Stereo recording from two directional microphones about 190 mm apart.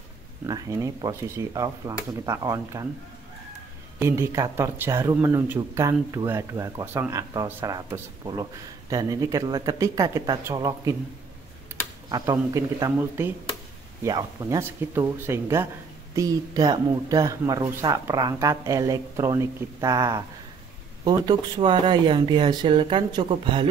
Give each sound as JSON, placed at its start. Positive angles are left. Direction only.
{"t": 0.5, "sound": "speech", "side_deg": -15}
{"t": 4.0, "sound": "speech", "side_deg": -15}
{"t": 12.1, "sound": "speech", "side_deg": -20}